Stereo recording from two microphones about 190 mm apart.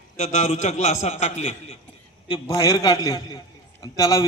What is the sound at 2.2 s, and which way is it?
A man's voice, 25° left (ahead or behind).